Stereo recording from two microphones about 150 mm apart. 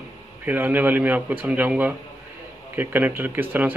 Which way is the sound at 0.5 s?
10° right (ahead or behind).